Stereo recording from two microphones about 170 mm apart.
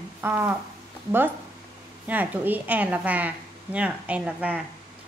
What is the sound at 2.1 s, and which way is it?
A woman's voice, 10° right (ahead or behind).